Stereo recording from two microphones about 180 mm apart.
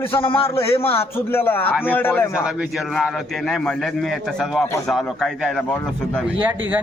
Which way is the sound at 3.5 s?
Centre (ahead or behind).